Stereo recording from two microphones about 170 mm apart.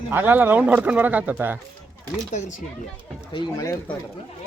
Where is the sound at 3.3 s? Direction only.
25° left (ahead or behind).